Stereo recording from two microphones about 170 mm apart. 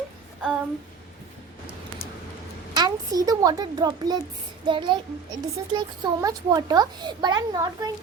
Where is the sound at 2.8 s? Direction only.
20° right (ahead or behind).